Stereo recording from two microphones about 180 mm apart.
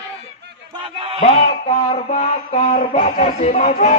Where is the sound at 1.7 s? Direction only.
40° left (ahead or behind).